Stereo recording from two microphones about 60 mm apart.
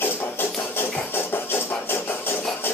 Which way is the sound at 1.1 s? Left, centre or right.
Left.